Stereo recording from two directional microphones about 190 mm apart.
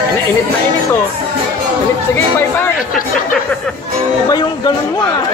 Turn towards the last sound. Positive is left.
turn(degrees=20)  # may be behind; listen again after turning